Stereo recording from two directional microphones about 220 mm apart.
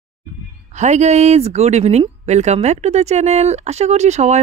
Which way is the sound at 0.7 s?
30° right (ahead or behind).